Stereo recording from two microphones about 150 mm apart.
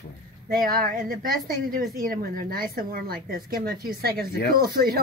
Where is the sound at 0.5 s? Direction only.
80° right.